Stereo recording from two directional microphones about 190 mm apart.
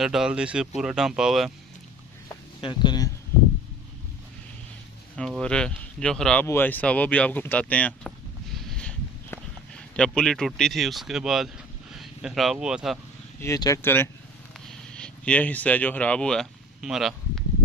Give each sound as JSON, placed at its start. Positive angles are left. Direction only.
{"t": 0.0, "sound": "speech", "side_deg": -5}
{"t": 2.6, "sound": "speech", "side_deg": 25}
{"t": 5.1, "sound": "speech", "side_deg": 5}
{"t": 8.6, "sound": "a sound", "side_deg": 5}
{"t": 9.9, "sound": "speech", "side_deg": 5}
{"t": 13.4, "sound": "speech", "side_deg": 15}